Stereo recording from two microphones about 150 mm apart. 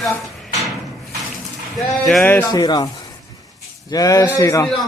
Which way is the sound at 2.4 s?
25° left (ahead or behind).